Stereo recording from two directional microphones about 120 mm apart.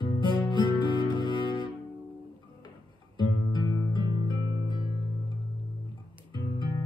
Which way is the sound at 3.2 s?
35° left (ahead or behind).